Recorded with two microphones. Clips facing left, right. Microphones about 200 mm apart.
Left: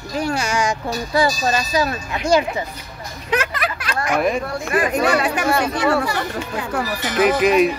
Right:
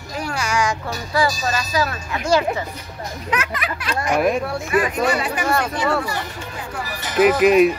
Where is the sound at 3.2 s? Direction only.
35° left (ahead or behind).